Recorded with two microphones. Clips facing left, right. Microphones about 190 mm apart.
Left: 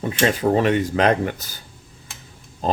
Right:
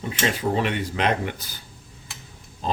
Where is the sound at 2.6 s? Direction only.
45° left (ahead or behind).